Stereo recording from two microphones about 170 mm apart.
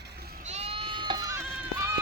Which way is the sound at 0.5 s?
35° right (ahead or behind).